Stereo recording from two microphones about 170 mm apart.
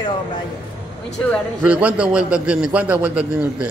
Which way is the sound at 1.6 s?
10° right (ahead or behind).